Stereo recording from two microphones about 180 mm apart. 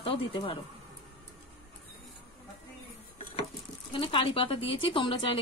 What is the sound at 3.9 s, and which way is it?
Speech, 30° left (ahead or behind).